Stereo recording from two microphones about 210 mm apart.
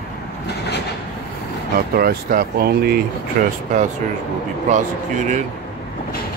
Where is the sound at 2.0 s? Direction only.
45° right (ahead or behind).